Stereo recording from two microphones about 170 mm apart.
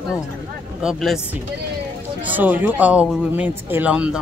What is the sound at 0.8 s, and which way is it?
Speech, centre (ahead or behind).